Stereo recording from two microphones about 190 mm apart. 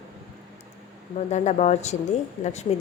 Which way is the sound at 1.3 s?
40° left (ahead or behind).